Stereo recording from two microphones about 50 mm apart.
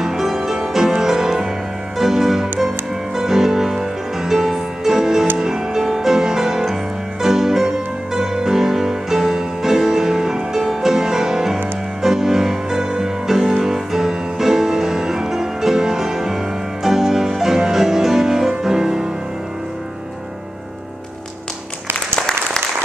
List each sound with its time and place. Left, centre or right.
0.0 s music: centre
22.1 s applause: centre